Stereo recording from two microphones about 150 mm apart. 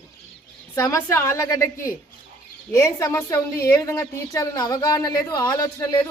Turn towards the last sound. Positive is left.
turn(degrees=25)  # may be behind; listen again after turning